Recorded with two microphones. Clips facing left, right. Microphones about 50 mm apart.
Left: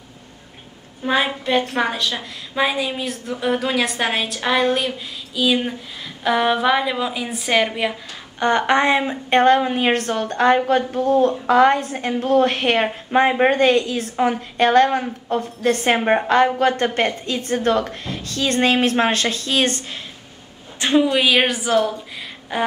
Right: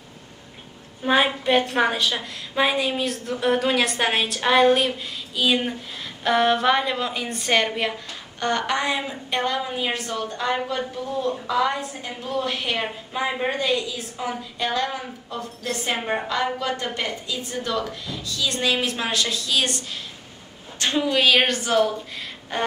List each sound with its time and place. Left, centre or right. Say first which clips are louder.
1.0 s a woman's voice: even; centre
8.1 s a woman's voice: left 6 dB; left
20.8 s a woman's voice: left 4 dB; centre